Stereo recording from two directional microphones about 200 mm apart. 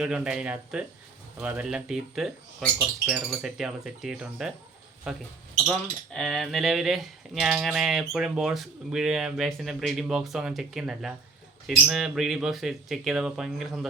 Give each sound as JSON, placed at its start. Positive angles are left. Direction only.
{"t": 0.0, "sound": "speech", "side_deg": -5}